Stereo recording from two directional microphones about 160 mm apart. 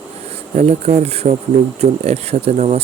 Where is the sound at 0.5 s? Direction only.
40° right (ahead or behind).